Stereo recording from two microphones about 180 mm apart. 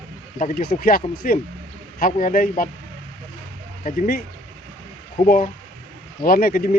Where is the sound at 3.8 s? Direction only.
50° left (ahead or behind).